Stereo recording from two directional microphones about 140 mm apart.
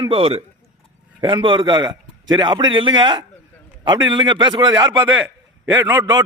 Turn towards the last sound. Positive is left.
turn(degrees=-25)  # may be behind; listen again after turning